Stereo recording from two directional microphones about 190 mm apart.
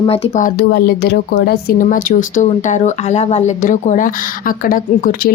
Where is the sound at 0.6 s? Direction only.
60° left (ahead or behind).